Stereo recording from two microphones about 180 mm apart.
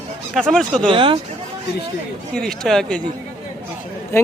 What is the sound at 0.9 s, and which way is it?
Speech, 25° right (ahead or behind).